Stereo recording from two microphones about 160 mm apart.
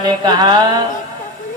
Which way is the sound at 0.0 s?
30° right (ahead or behind).